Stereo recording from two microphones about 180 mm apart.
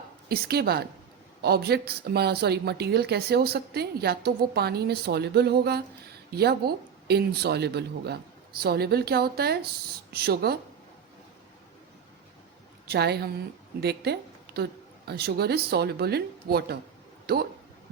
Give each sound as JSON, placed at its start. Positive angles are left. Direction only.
{"t": 0.3, "sound": "a woman's voice", "side_deg": -60}
{"t": 12.9, "sound": "a woman's voice", "side_deg": -65}